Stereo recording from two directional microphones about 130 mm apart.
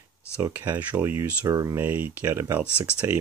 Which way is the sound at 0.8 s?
15° right (ahead or behind).